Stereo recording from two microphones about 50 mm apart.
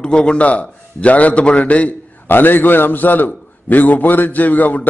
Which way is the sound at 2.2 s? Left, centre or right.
Left.